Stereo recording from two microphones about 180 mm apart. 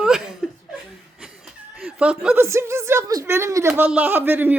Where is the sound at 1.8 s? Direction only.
5° right (ahead or behind).